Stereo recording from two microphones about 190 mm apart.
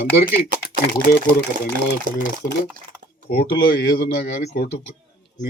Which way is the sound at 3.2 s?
55° left (ahead or behind).